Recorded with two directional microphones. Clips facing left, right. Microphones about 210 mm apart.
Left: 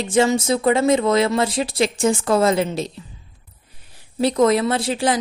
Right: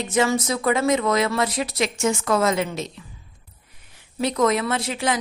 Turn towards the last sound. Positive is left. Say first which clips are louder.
# left 4 dB
turn(degrees=30)  # may be behind; listen again after turning